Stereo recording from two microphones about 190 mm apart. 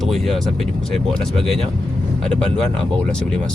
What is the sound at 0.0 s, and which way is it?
Speech, centre (ahead or behind).